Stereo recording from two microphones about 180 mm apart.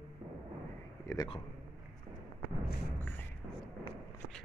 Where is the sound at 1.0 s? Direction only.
20° left (ahead or behind).